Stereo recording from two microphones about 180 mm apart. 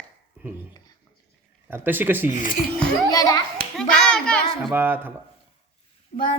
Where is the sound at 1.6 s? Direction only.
10° right (ahead or behind).